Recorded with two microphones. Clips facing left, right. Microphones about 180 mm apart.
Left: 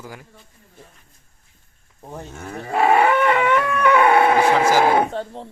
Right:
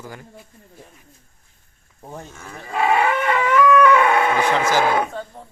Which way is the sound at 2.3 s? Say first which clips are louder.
Left 6 dB; 40° left (ahead or behind).